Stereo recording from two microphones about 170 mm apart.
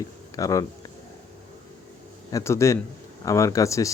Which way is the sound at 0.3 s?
20° left (ahead or behind).